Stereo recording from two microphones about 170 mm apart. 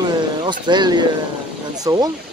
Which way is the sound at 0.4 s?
25° right (ahead or behind).